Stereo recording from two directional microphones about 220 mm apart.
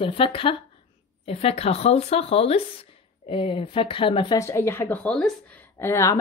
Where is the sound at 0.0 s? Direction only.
25° left (ahead or behind).